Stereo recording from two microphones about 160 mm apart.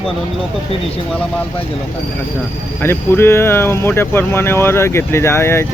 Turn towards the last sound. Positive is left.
turn(degrees=15)  # may be behind; listen again after turning